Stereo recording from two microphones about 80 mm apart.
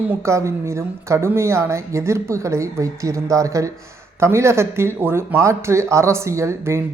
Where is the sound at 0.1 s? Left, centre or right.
Right.